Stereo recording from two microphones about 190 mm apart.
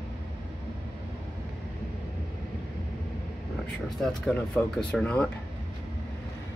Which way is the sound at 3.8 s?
Centre (ahead or behind).